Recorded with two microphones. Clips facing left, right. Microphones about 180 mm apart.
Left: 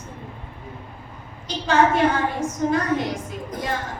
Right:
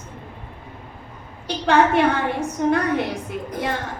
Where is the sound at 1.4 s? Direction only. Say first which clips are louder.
Right 1 dB; 65° right (ahead or behind).